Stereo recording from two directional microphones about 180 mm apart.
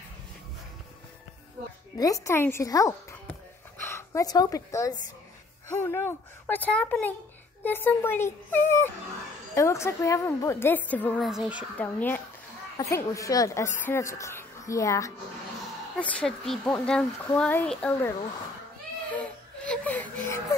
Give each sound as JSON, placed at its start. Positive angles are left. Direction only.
{"t": 2.0, "sound": "a woman's voice", "side_deg": 20}
{"t": 11.2, "sound": "speech", "side_deg": -5}
{"t": 11.8, "sound": "a woman's voice", "side_deg": 10}
{"t": 16.0, "sound": "speech", "side_deg": 5}
{"t": 19.1, "sound": "baby cry", "side_deg": 5}